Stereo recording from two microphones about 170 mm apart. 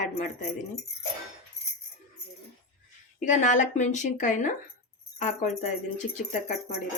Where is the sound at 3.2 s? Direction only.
45° left (ahead or behind).